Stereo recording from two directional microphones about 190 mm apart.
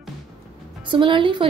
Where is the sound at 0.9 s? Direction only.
25° right (ahead or behind).